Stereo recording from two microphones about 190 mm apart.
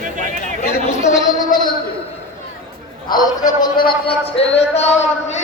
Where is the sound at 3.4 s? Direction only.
25° left (ahead or behind).